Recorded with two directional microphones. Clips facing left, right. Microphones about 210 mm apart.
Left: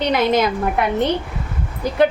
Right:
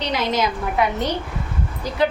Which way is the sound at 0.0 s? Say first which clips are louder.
Left 5 dB; 55° left (ahead or behind).